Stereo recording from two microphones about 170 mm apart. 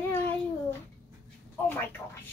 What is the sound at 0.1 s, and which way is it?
Child singing, 15° left (ahead or behind).